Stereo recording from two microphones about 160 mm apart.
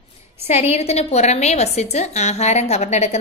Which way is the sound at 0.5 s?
40° left (ahead or behind).